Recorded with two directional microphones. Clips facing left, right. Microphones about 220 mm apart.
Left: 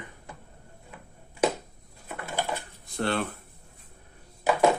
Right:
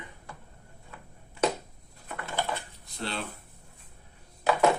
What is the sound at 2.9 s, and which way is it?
Speech, 55° left (ahead or behind).